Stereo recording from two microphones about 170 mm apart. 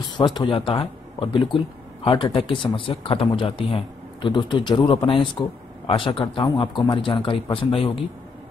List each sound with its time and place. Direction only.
0.2 s speech: 25° left (ahead or behind)